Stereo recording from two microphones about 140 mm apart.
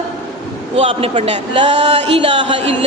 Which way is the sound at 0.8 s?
45° right (ahead or behind).